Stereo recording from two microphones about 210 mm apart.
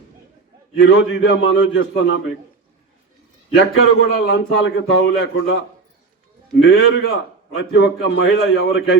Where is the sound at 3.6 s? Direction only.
55° left (ahead or behind).